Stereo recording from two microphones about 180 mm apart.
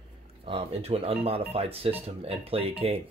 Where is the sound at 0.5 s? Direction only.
35° right (ahead or behind).